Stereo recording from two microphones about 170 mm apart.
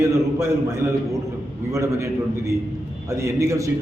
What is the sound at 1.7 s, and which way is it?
A man's voice, 15° right (ahead or behind).